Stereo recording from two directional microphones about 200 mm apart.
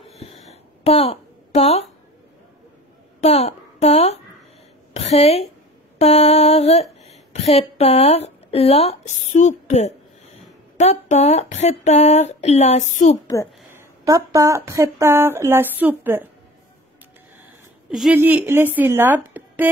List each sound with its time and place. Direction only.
0.2 s a sound: 30° left (ahead or behind)
3.2 s a woman's voice: 30° left (ahead or behind)
5.9 s a sound: 30° left (ahead or behind)
10.8 s speech: 35° left (ahead or behind)
13.7 s speech: 15° right (ahead or behind)
17.9 s speech: 5° right (ahead or behind)